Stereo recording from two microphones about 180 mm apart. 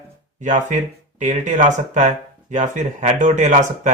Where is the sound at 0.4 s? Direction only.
45° right (ahead or behind).